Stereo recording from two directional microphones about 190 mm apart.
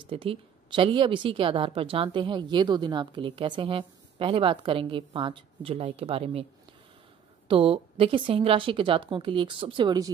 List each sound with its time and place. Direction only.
0.0 s a woman's voice: 25° right (ahead or behind)
7.4 s a woman's voice: 30° right (ahead or behind)